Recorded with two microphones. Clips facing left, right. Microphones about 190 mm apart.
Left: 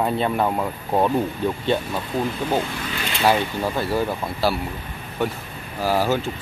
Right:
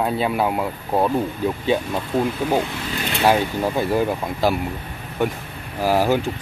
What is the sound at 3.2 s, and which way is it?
Speech, 10° right (ahead or behind).